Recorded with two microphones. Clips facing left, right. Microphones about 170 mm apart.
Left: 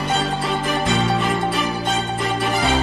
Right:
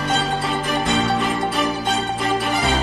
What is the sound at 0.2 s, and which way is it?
Music, centre (ahead or behind).